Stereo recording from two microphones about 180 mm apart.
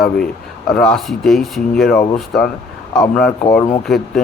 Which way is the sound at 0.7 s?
Centre (ahead or behind).